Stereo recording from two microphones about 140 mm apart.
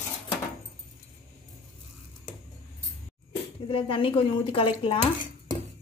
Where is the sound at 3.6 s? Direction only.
40° left (ahead or behind).